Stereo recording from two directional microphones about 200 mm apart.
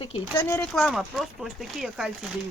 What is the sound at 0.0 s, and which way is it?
Speech, 25° left (ahead or behind).